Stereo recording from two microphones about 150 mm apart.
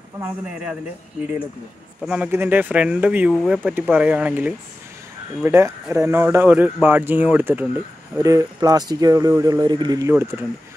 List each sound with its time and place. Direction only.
2.0 s speech: 10° right (ahead or behind)
8.2 s speech: 20° right (ahead or behind)